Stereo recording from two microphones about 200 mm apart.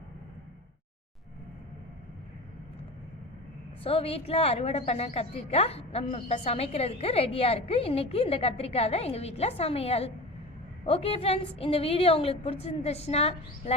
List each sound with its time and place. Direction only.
3.8 s a woman's voice: 30° left (ahead or behind)